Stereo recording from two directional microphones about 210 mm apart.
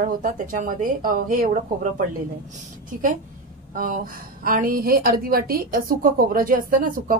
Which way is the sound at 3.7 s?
40° right (ahead or behind).